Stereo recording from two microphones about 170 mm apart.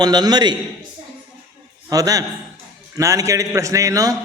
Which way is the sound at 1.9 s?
20° right (ahead or behind).